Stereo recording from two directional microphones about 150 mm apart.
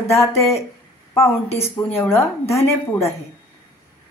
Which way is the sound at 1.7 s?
15° left (ahead or behind).